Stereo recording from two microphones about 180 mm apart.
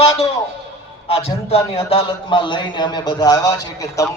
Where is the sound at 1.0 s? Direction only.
35° left (ahead or behind).